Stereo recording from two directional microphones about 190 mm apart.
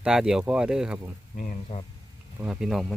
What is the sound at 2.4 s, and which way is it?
Speech, 5° right (ahead or behind).